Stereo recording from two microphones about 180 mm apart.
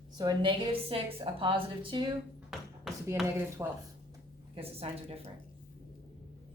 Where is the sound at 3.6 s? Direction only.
15° right (ahead or behind).